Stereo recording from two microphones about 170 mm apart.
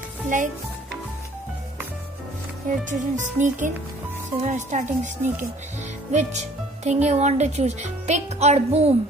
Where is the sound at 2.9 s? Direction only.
45° right (ahead or behind).